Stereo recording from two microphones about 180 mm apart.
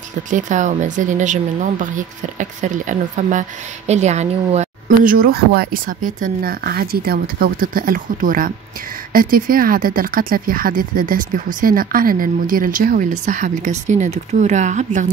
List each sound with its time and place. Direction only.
0.3 s speech: 45° right (ahead or behind)